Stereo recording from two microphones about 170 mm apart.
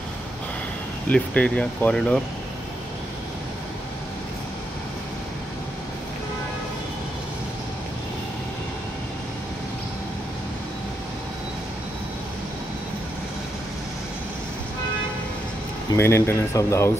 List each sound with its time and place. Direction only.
1.0 s speech: 10° left (ahead or behind)
15.9 s speech: 15° left (ahead or behind)